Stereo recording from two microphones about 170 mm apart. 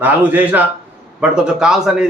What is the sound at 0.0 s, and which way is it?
A man's voice, 10° right (ahead or behind).